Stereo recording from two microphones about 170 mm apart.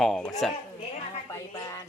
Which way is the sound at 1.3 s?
15° left (ahead or behind).